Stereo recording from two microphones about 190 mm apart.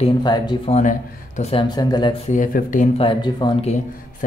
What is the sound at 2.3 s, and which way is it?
Speech, 45° left (ahead or behind).